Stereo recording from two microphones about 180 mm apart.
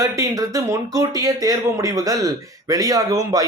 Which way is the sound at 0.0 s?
20° right (ahead or behind).